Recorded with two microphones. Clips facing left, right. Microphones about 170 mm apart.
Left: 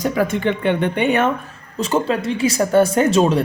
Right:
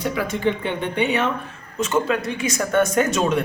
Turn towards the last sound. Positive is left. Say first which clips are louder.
# left 4 dB
turn(degrees=30)  # may be behind; listen again after turning